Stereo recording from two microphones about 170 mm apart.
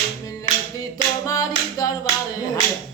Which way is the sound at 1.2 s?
20° left (ahead or behind).